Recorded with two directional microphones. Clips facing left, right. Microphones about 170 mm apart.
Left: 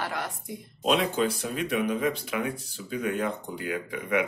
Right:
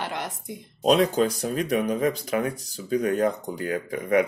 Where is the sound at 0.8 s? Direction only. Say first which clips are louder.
Right 5 dB; 40° right (ahead or behind).